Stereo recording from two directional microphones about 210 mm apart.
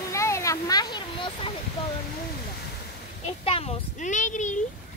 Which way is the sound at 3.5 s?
30° left (ahead or behind).